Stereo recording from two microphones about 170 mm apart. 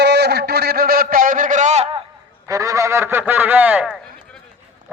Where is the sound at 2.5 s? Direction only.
20° right (ahead or behind).